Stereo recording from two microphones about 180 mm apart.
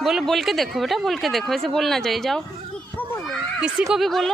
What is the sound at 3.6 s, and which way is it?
Speech, 5° right (ahead or behind).